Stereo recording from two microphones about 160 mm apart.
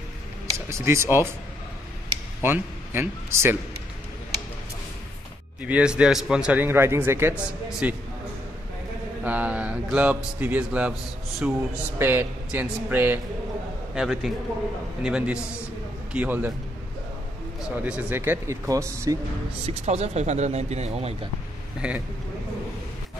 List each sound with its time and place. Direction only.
0.7 s a man's voice: 15° right (ahead or behind)
2.4 s a man's voice: 15° right (ahead or behind)
5.6 s a man's voice: 10° right (ahead or behind)
9.2 s a man's voice: 10° right (ahead or behind)
17.6 s a man's voice: 5° right (ahead or behind)
19.6 s speech: 45° right (ahead or behind)
21.8 s a man's voice: 5° right (ahead or behind)